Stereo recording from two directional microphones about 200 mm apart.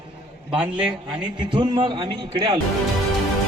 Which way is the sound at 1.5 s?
25° right (ahead or behind).